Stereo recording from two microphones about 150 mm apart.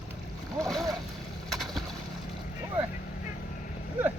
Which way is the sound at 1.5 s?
Centre (ahead or behind).